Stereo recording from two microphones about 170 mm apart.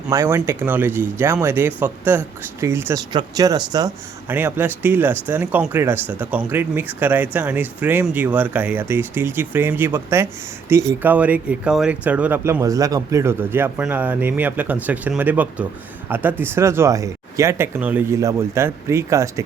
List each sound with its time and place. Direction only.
0.1 s speech: 15° right (ahead or behind)